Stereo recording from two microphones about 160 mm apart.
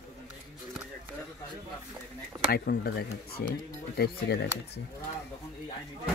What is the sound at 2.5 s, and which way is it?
Speech, 70° left (ahead or behind).